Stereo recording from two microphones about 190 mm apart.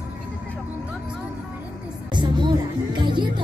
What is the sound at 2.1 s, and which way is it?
Music, 25° right (ahead or behind).